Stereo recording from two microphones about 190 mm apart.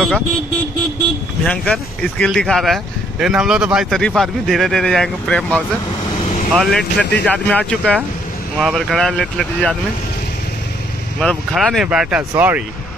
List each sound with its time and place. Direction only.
1.4 s speech: 5° left (ahead or behind)
11.1 s speech: 5° left (ahead or behind)